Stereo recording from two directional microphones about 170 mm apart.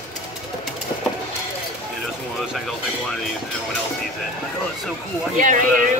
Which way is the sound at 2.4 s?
5° right (ahead or behind).